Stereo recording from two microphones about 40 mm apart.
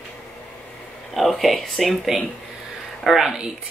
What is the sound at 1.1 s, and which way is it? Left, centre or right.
Speech, centre.